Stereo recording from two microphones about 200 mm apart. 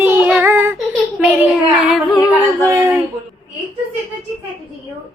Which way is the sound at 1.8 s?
Centre (ahead or behind).